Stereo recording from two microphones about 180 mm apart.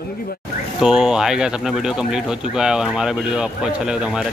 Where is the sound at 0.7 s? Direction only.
5° right (ahead or behind).